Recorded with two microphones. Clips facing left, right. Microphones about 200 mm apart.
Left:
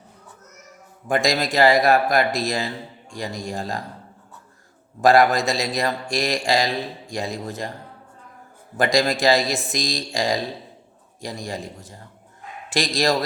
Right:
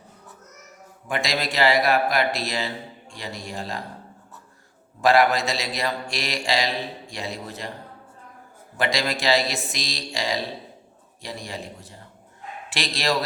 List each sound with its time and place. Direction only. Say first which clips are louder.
1.0 s speech: left 5 dB; 45° left (ahead or behind)
4.9 s speech: left 3 dB; 45° left (ahead or behind)
8.8 s speech: left 6 dB; 45° left (ahead or behind)